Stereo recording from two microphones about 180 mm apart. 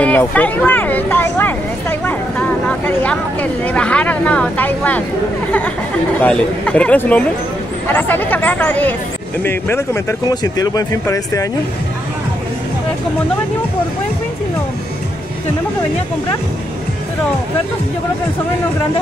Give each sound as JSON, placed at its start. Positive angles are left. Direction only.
{"t": 0.0, "sound": "speech", "side_deg": 10}
{"t": 6.2, "sound": "speech", "side_deg": 5}